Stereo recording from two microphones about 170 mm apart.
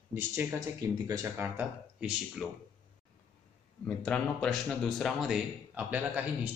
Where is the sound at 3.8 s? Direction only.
5° left (ahead or behind).